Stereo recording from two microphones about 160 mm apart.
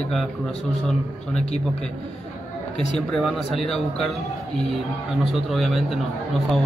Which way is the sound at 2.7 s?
Centre (ahead or behind).